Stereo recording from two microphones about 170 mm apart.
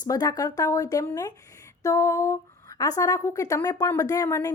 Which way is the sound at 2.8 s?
20° left (ahead or behind).